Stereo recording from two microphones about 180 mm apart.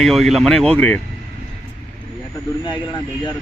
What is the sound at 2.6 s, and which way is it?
Vehicle, 25° left (ahead or behind).